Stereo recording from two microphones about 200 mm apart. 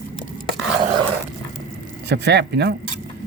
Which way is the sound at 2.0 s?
55° right (ahead or behind).